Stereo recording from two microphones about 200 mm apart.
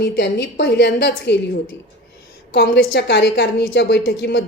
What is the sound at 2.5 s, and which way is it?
Speech, 55° left (ahead or behind).